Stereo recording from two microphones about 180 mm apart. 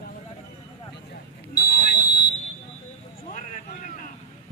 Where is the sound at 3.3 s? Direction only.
45° left (ahead or behind).